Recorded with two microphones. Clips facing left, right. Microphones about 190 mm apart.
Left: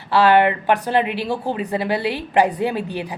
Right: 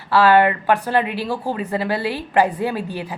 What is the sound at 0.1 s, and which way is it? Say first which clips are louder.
A woman's voice: even; 20° left (ahead or behind).